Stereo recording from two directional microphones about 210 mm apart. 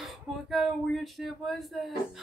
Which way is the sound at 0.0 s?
Centre (ahead or behind).